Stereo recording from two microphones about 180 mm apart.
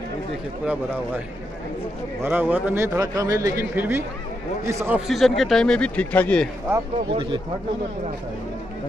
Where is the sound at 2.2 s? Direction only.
10° right (ahead or behind); by 6.5 s 5° left (ahead or behind).